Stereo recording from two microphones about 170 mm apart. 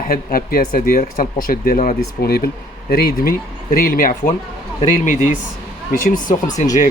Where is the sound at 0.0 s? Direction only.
60° left (ahead or behind).